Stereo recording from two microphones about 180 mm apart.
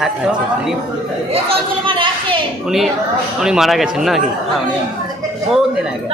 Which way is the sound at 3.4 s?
5° right (ahead or behind).